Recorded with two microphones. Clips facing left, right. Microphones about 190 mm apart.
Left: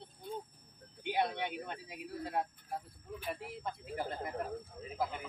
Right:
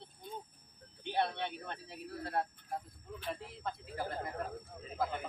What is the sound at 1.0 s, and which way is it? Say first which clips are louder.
Speech: left 1 dB; 15° left (ahead or behind).